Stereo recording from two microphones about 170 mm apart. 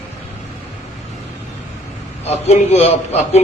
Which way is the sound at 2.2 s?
40° left (ahead or behind).